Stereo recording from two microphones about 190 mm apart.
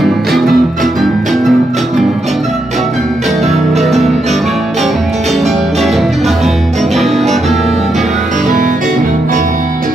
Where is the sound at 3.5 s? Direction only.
Centre (ahead or behind).